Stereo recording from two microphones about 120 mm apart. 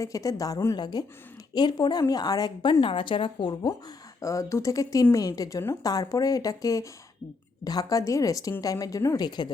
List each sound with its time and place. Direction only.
0.0 s a woman's voice: 30° left (ahead or behind)
4.2 s speech: 25° left (ahead or behind)